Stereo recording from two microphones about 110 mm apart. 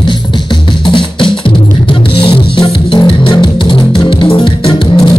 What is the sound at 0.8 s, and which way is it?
Music, 50° left (ahead or behind).